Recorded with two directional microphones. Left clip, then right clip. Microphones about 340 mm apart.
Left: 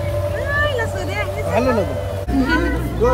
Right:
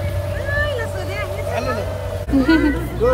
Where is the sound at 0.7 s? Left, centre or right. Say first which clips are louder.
Left 3 dB; left.